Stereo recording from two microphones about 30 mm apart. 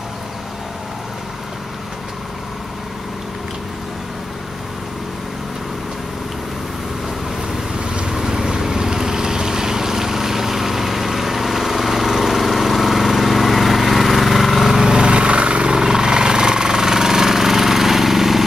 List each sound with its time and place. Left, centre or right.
7.7 s vehicle: right
8.1 s boat: centre
14.8 s vehicle: right
15.7 s jackhammer: right